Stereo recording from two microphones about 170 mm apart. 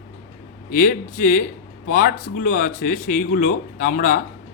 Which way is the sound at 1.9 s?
50° left (ahead or behind).